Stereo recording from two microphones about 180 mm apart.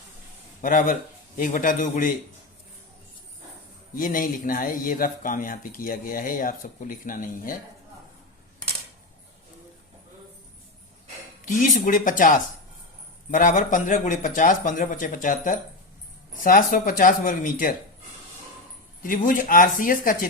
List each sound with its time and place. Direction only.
0.6 s speech: 50° left (ahead or behind)
3.9 s speech: 50° left (ahead or behind)
11.4 s speech: 45° left (ahead or behind)
19.0 s speech: 50° left (ahead or behind)